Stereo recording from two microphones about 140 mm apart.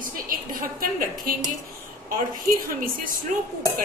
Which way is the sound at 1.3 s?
90° right.